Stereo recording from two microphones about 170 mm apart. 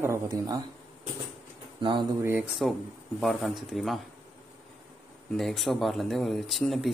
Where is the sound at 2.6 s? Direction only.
Centre (ahead or behind).